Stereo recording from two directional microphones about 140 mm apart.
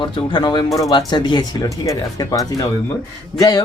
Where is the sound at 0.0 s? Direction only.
35° left (ahead or behind).